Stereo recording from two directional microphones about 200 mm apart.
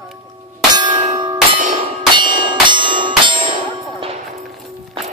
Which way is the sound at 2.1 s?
25° right (ahead or behind).